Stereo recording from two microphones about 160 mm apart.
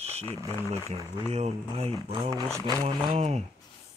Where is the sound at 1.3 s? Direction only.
40° right (ahead or behind).